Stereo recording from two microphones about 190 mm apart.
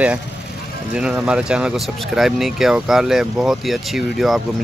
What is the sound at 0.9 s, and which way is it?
Speech, 5° right (ahead or behind).